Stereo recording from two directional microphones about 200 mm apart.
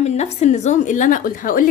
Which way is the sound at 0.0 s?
35° left (ahead or behind).